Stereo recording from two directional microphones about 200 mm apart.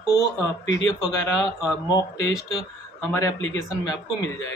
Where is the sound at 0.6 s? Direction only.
65° left (ahead or behind).